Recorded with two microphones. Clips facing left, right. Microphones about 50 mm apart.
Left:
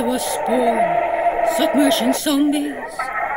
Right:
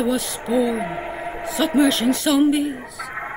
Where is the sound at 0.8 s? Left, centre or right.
Left.